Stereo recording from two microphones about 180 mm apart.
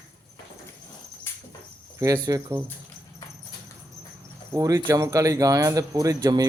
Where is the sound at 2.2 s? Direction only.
15° right (ahead or behind).